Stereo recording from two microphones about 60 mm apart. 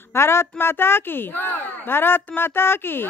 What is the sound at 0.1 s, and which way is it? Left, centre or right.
Speech, left.